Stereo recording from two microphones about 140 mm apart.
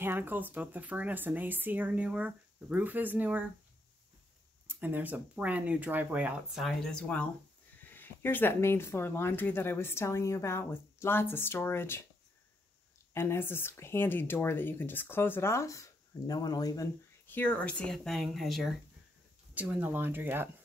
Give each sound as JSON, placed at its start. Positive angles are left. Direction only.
{"t": 0.0, "sound": "speech", "side_deg": -15}
{"t": 4.6, "sound": "speech", "side_deg": -15}
{"t": 6.6, "sound": "speech", "side_deg": 5}
{"t": 13.1, "sound": "speech", "side_deg": 15}
{"t": 19.5, "sound": "speech", "side_deg": -10}